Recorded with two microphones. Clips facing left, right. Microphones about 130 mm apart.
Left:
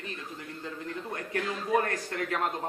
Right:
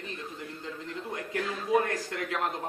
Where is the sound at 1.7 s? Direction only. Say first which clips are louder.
Right 2 dB; 10° right (ahead or behind).